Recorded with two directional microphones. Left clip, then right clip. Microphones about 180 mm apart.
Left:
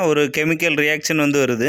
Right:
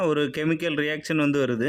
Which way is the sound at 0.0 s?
20° left (ahead or behind).